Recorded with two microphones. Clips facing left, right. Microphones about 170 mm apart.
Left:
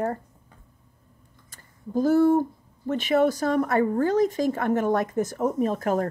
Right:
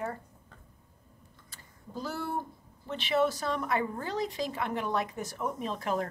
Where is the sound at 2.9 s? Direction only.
45° left (ahead or behind).